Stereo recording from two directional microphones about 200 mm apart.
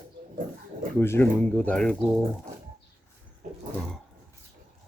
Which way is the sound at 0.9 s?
10° left (ahead or behind).